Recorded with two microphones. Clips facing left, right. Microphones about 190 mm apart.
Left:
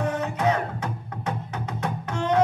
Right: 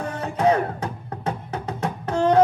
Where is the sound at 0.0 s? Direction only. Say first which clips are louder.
Right 1 dB; 30° right (ahead or behind).